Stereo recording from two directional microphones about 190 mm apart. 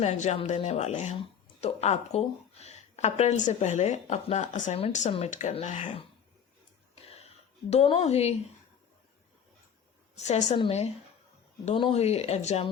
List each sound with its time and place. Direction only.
0.0 s a woman's voice: 35° left (ahead or behind)
6.9 s a sound: 30° left (ahead or behind)
7.7 s a woman's voice: 35° left (ahead or behind)
10.2 s a woman's voice: 35° left (ahead or behind)